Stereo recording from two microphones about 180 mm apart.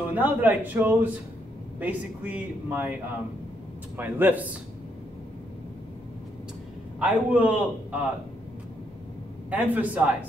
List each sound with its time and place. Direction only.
0.1 s speech: 10° right (ahead or behind)
3.9 s speech: 10° right (ahead or behind)
7.0 s speech: 5° right (ahead or behind)
9.5 s speech: 10° right (ahead or behind)